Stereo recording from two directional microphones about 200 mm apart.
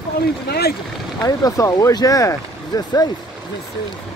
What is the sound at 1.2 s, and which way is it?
Speech, 15° left (ahead or behind).